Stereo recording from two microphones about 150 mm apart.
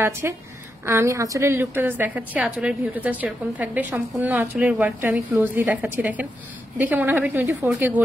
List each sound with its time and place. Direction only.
0.2 s a woman's voice: 15° right (ahead or behind)